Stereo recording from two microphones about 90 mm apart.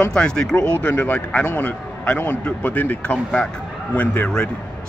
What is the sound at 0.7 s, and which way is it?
Speech, 25° left (ahead or behind).